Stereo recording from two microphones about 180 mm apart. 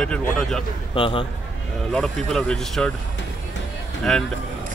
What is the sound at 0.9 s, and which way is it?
Speech, 25° left (ahead or behind).